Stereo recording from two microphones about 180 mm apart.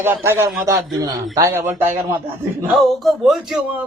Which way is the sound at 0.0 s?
15° right (ahead or behind).